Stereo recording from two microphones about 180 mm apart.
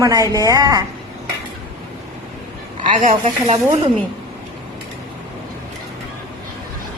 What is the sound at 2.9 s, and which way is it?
Speech, 50° right (ahead or behind).